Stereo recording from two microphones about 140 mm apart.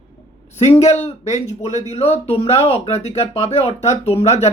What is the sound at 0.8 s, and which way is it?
Speech, 50° left (ahead or behind).